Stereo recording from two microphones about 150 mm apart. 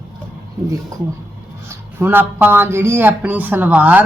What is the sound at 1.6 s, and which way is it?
A man's voice, 15° right (ahead or behind).